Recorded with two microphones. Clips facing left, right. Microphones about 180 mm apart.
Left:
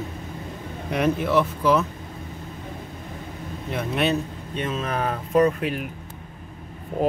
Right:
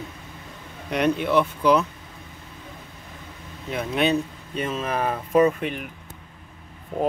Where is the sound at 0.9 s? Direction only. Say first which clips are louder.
Even; centre (ahead or behind).